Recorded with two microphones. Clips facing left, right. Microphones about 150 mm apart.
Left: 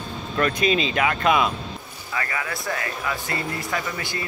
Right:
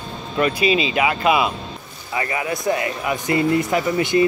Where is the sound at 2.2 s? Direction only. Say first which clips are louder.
Right 6 dB; 20° right (ahead or behind).